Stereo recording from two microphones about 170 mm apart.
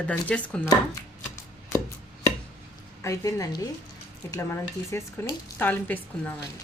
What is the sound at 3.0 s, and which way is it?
A woman's voice, 20° left (ahead or behind).